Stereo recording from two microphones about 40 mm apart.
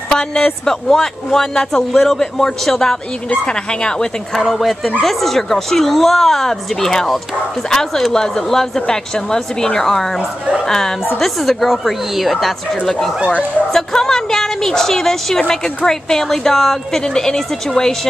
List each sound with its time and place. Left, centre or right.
0.1 s a woman's voice: centre
3.4 s speech: left
4.3 s a woman's voice: centre
13.7 s a woman's voice: centre